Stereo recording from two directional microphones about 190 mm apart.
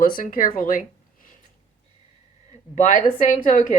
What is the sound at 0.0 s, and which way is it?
Speech, 45° left (ahead or behind).